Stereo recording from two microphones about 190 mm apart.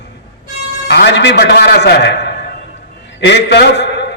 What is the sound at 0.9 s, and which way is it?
A man's voice, 60° left (ahead or behind).